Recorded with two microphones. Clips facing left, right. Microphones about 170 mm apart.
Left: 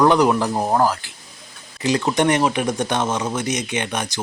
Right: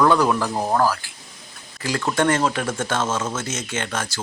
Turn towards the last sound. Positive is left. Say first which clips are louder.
# left 3 dB
turn(degrees=15)  # may be behind; listen again after turning